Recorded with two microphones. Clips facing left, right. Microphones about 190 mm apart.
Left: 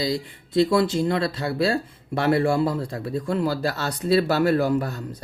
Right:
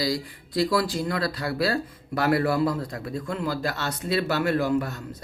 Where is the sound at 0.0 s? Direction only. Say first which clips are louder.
Left 1 dB; 25° left (ahead or behind).